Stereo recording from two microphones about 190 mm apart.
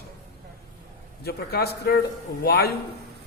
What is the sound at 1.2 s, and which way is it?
Speech, 55° left (ahead or behind).